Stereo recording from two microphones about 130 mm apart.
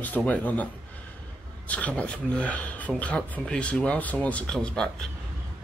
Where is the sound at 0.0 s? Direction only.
10° left (ahead or behind).